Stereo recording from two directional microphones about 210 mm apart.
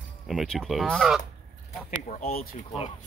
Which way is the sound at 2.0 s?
40° left (ahead or behind).